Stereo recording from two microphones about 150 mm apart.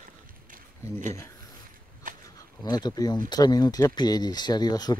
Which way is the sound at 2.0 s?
60° right (ahead or behind).